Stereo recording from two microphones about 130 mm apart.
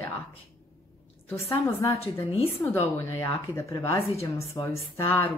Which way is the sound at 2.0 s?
50° left (ahead or behind).